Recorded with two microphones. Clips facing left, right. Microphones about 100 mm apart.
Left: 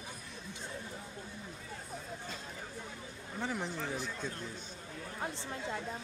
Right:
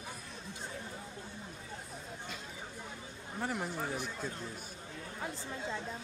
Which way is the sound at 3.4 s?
10° right (ahead or behind).